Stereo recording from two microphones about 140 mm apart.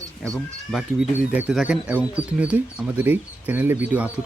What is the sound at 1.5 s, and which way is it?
Speech, 5° right (ahead or behind).